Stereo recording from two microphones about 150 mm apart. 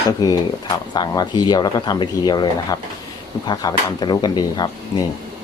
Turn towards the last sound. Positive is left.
turn(degrees=25)  # may be behind; listen again after turning